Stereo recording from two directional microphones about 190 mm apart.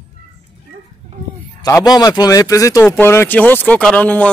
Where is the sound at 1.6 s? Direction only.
20° left (ahead or behind).